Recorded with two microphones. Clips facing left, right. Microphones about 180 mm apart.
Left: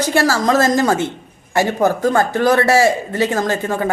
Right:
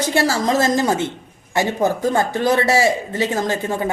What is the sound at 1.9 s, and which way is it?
Speech, 20° right (ahead or behind).